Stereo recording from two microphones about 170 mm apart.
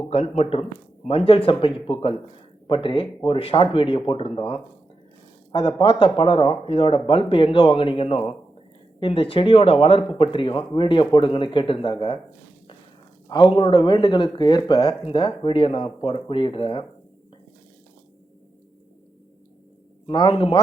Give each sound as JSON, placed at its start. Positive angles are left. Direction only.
{"t": 0.1, "sound": "speech", "side_deg": 40}
{"t": 13.2, "sound": "speech", "side_deg": 25}
{"t": 20.1, "sound": "speech", "side_deg": 30}